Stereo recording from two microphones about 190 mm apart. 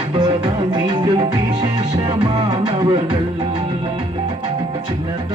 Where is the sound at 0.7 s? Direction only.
25° right (ahead or behind).